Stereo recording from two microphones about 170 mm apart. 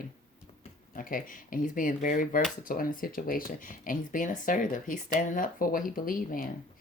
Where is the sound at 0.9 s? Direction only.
55° left (ahead or behind).